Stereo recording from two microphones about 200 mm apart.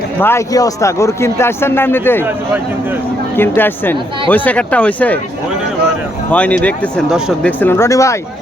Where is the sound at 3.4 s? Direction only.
10° left (ahead or behind).